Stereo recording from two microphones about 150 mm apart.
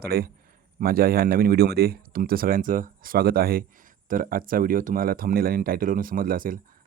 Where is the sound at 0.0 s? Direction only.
90° right.